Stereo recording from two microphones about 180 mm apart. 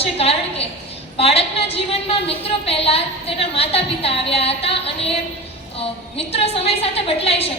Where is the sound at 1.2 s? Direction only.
35° left (ahead or behind).